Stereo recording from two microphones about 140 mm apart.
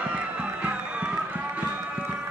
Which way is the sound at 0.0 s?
10° right (ahead or behind).